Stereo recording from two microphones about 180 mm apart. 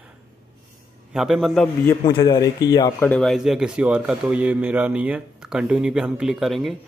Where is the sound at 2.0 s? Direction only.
20° left (ahead or behind).